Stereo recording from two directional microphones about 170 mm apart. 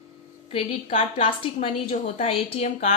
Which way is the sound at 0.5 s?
35° left (ahead or behind).